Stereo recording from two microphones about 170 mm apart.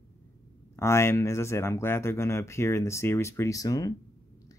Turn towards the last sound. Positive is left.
turn(degrees=20)  # may be behind; listen again after turning